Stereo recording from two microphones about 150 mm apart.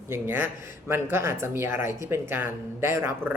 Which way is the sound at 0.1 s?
15° right (ahead or behind).